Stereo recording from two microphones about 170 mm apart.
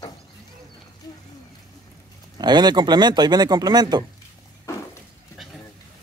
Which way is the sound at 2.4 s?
25° right (ahead or behind).